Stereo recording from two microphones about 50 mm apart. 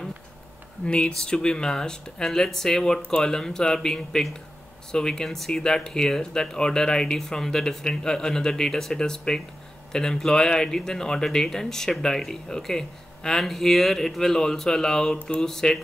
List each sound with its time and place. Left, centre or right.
0.8 s speech: centre